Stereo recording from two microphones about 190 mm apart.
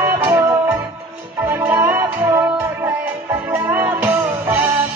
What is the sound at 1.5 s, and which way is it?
Music, 10° right (ahead or behind).